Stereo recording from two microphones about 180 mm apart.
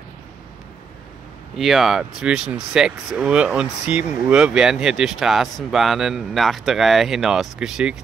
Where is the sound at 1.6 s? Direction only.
Centre (ahead or behind).